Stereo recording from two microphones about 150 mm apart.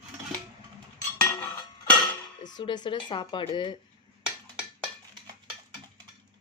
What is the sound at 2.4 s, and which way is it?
A woman's voice, 30° left (ahead or behind).